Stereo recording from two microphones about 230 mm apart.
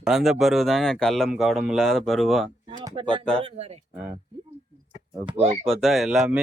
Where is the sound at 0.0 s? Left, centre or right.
Centre.